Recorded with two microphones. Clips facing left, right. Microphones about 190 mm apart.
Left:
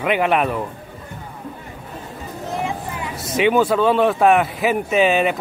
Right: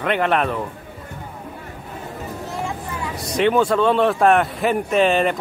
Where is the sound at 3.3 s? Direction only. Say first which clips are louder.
Left 1 dB; 5° left (ahead or behind).